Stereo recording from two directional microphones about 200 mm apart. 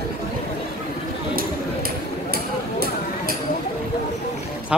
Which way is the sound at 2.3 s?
50° right (ahead or behind).